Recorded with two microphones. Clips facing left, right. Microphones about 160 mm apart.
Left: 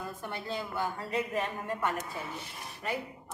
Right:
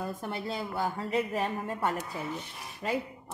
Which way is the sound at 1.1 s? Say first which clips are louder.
Right 2 dB; 30° right (ahead or behind).